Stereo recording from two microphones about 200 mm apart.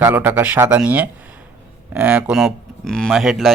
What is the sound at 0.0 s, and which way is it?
Speech, 10° right (ahead or behind).